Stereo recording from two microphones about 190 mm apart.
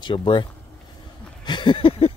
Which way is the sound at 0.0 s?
25° left (ahead or behind).